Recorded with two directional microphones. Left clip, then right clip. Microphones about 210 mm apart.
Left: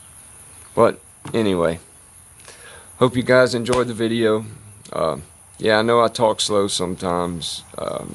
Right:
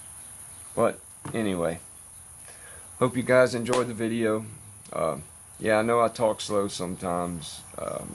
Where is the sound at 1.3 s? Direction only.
45° left (ahead or behind).